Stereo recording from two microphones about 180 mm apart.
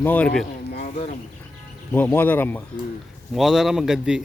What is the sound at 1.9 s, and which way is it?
Speech, 10° left (ahead or behind).